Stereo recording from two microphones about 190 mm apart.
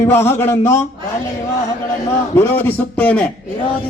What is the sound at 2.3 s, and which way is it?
Speech, 10° left (ahead or behind).